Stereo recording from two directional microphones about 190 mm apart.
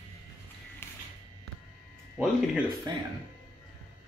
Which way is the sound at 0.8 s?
10° left (ahead or behind).